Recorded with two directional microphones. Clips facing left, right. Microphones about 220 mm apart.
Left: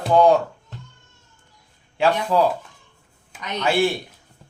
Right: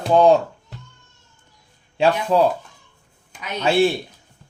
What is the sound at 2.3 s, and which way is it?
Speech, 20° right (ahead or behind).